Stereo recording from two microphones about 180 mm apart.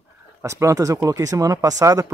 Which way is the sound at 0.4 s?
15° right (ahead or behind).